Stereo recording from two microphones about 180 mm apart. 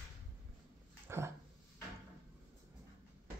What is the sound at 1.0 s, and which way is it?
Dog, 15° right (ahead or behind).